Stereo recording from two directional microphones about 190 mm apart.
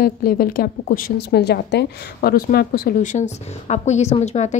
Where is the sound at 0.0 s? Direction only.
50° left (ahead or behind).